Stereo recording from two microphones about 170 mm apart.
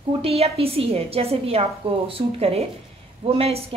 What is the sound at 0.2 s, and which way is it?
A woman's voice, 35° right (ahead or behind).